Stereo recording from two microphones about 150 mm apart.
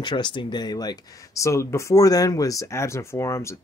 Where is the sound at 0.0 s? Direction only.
30° left (ahead or behind).